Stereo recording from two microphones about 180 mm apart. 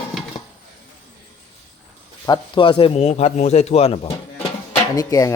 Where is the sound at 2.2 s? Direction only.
25° left (ahead or behind).